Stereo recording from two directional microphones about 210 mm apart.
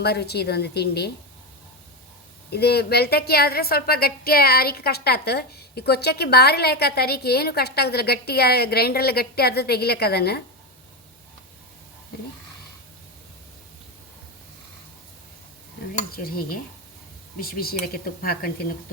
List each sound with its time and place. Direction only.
0.0 s a woman's voice: 50° left (ahead or behind)
2.5 s a woman's voice: 50° left (ahead or behind)
16.1 s a woman's voice: 45° left (ahead or behind)